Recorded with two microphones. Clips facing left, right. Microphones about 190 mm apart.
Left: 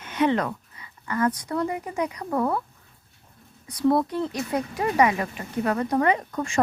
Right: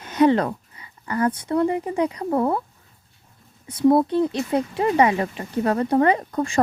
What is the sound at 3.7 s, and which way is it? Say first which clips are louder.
Speech: right 5 dB; 25° right (ahead or behind).